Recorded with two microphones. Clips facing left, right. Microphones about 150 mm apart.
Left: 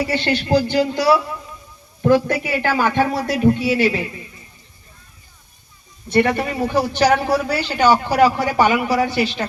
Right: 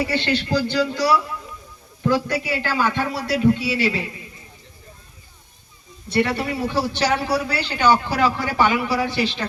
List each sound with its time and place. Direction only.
0.1 s a man's voice: 45° left (ahead or behind)
6.1 s a man's voice: 50° left (ahead or behind)